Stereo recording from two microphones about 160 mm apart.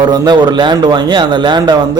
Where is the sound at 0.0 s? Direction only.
25° right (ahead or behind).